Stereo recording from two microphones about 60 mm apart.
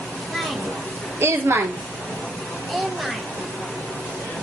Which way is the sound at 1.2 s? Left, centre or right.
Right.